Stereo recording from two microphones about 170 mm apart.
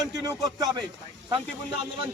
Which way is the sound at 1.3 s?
35° right (ahead or behind).